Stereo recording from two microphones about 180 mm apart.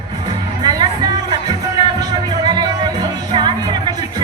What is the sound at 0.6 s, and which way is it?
Music, 20° right (ahead or behind).